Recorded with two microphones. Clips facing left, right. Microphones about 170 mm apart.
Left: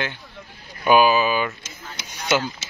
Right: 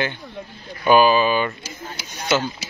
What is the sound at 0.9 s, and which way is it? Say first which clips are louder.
Speech: right 2 dB; 10° left (ahead or behind).